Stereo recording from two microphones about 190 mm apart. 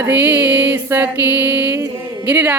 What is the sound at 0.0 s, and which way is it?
Speech, 10° right (ahead or behind).